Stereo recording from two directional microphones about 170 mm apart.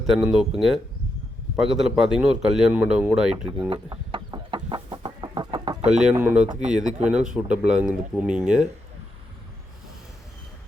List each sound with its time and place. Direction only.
0.1 s speech: centre (ahead or behind)
3.7 s chicken: 30° right (ahead or behind)
6.0 s speech: 10° right (ahead or behind)